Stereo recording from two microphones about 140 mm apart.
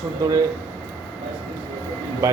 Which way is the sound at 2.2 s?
25° right (ahead or behind).